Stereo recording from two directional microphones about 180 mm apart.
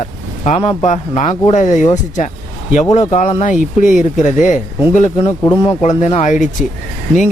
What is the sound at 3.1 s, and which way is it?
Speech, 35° left (ahead or behind).